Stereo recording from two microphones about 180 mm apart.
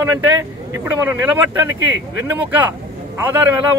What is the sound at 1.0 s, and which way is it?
A man's voice, 15° right (ahead or behind).